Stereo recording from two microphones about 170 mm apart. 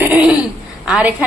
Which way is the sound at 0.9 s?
5° right (ahead or behind).